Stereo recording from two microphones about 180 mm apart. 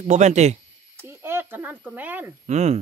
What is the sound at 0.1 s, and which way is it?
Speech, 40° right (ahead or behind).